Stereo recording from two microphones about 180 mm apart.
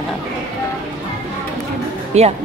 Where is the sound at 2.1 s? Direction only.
40° right (ahead or behind).